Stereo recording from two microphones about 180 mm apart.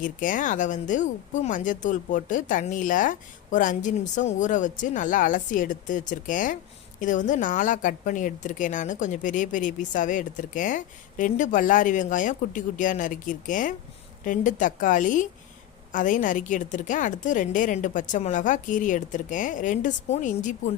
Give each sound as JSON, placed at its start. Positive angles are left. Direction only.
{"t": 0.0, "sound": "a woman's voice", "side_deg": 50}